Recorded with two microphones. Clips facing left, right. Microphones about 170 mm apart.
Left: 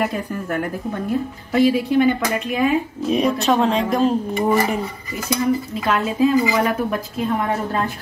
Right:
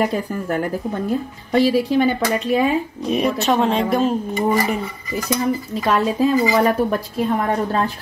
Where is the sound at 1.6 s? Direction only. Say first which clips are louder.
Left 1 dB; 30° right (ahead or behind).